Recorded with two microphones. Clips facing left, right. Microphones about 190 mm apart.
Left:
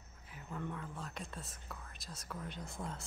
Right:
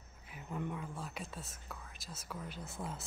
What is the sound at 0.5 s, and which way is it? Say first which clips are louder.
Speech: right 2 dB; 15° right (ahead or behind).